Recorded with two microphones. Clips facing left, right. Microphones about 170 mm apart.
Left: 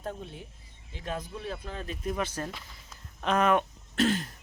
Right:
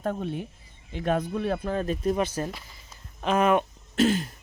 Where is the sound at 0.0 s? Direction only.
65° right (ahead or behind); by 2.1 s 45° right (ahead or behind).